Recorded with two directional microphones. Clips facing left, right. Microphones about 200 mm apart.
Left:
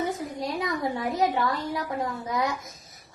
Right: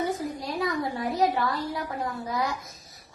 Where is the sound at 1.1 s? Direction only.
20° left (ahead or behind).